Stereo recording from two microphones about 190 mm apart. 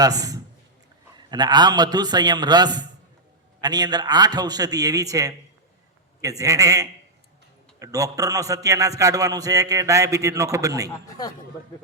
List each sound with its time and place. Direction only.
0.0 s a man's voice: 20° right (ahead or behind)